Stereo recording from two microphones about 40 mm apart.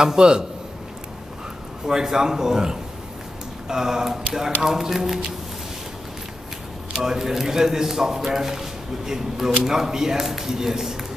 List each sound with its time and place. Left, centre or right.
0.0 s a man's voice: centre
1.9 s a man's voice: centre
6.9 s a man's voice: centre